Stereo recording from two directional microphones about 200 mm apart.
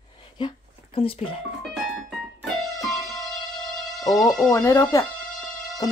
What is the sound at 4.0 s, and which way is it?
Speech, 20° left (ahead or behind).